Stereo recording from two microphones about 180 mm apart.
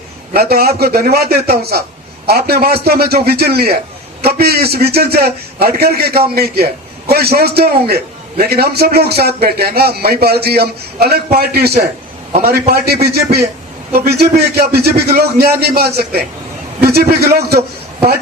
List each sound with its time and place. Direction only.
0.3 s a man's voice: 60° right (ahead or behind)